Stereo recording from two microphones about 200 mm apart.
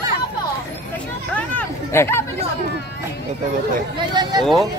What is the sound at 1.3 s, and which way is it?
Chatter, 10° left (ahead or behind).